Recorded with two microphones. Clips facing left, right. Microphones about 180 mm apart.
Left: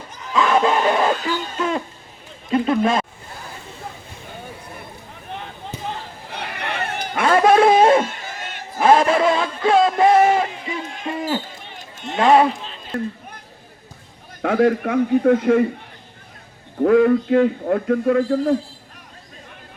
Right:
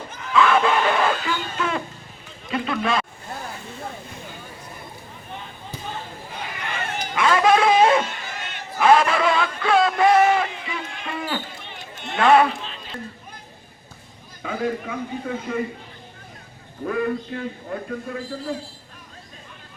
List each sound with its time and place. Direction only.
0.1 s a sound: 40° left (ahead or behind)
2.5 s speech: 45° left (ahead or behind)
6.2 s a sound: 70° left (ahead or behind); by 8.9 s 45° left (ahead or behind)
8.9 s music: 30° left (ahead or behind)
12.2 s speech: 25° left (ahead or behind)
14.4 s a man's voice: 70° left (ahead or behind)
16.8 s a man's voice: 70° left (ahead or behind)